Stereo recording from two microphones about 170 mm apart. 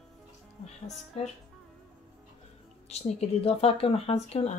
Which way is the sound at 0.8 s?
40° left (ahead or behind).